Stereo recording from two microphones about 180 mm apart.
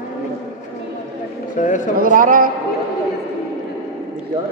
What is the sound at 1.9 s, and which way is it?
Speech, 50° right (ahead or behind).